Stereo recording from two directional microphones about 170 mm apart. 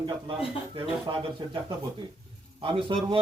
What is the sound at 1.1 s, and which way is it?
A man's voice, 30° right (ahead or behind).